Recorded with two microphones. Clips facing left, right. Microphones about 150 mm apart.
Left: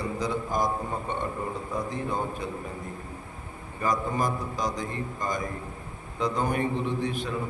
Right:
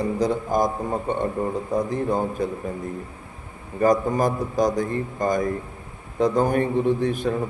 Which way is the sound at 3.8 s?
45° right (ahead or behind).